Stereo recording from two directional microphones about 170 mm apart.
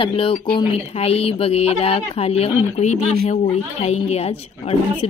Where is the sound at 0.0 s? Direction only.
30° left (ahead or behind).